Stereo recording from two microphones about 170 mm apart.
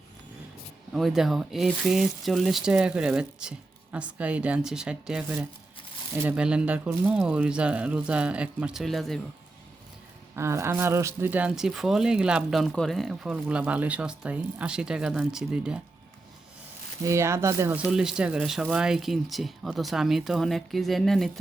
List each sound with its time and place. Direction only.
0.9 s speech: centre (ahead or behind)
10.3 s speech: 15° right (ahead or behind)
17.0 s speech: 15° right (ahead or behind)
17.8 s speech: 5° right (ahead or behind)